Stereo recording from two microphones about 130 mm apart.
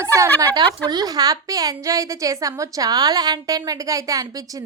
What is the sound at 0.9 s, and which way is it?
A woman's voice, 30° right (ahead or behind).